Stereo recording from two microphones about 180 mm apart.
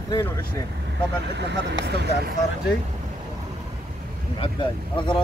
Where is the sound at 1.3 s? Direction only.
65° right (ahead or behind).